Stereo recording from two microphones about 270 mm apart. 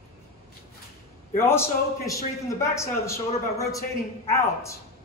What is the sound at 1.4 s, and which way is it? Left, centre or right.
A man's voice, centre.